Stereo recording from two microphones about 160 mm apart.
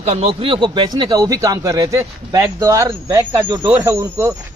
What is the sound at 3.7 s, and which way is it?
Speech, 15° right (ahead or behind).